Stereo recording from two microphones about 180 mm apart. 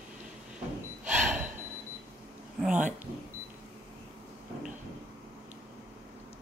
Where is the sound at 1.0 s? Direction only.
40° right (ahead or behind).